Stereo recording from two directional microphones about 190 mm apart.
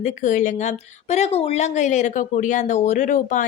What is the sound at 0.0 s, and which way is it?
Speech, 40° left (ahead or behind).